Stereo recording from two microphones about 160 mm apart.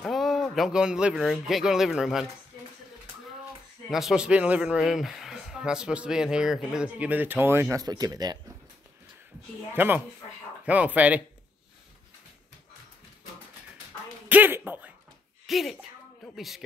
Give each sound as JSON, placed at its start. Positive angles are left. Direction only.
{"t": 0.0, "sound": "speech", "side_deg": 0}
{"t": 3.9, "sound": "speech", "side_deg": -5}
{"t": 7.8, "sound": "speech", "side_deg": -25}
{"t": 9.8, "sound": "speech", "side_deg": -10}
{"t": 14.3, "sound": "a sound", "side_deg": -10}
{"t": 15.4, "sound": "speech", "side_deg": 0}